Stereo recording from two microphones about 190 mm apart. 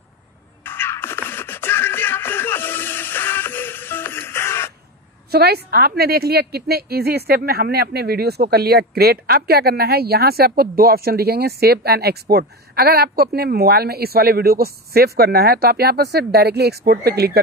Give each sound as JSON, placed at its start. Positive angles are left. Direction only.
{"t": 0.7, "sound": "music", "side_deg": 10}
{"t": 5.3, "sound": "a woman's voice", "side_deg": -55}